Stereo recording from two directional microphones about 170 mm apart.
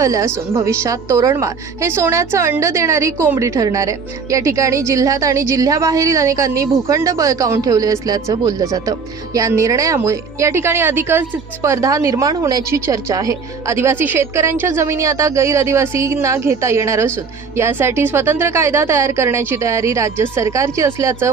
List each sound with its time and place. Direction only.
0.0 s a woman's voice: 20° right (ahead or behind)